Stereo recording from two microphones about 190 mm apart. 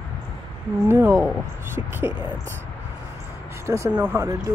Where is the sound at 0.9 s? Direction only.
10° right (ahead or behind).